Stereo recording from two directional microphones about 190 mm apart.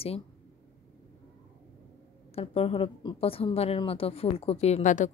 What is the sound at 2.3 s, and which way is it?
A woman's voice, 30° left (ahead or behind).